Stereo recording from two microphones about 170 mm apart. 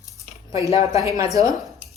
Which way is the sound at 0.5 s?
20° right (ahead or behind).